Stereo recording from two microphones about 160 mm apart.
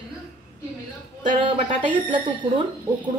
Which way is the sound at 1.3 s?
35° right (ahead or behind).